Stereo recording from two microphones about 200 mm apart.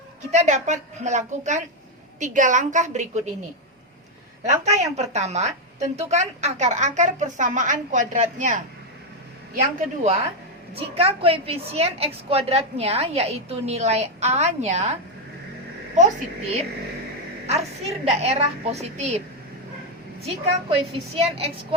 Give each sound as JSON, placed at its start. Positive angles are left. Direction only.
{"t": 0.3, "sound": "a woman's voice", "side_deg": -35}
{"t": 4.6, "sound": "a woman's voice", "side_deg": -35}
{"t": 17.4, "sound": "a woman's voice", "side_deg": -30}
{"t": 20.2, "sound": "a woman's voice", "side_deg": -30}